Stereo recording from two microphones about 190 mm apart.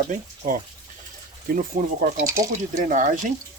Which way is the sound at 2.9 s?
40° right (ahead or behind).